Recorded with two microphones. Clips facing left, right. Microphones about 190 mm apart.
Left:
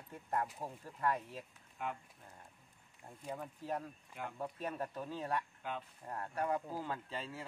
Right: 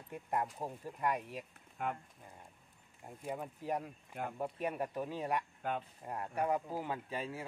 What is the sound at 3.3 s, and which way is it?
Speech, 15° right (ahead or behind).